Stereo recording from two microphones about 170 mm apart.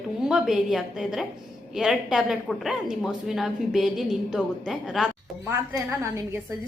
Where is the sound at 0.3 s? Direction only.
5° right (ahead or behind).